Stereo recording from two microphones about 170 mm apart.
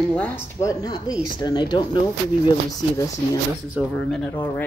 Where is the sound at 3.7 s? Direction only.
5° left (ahead or behind).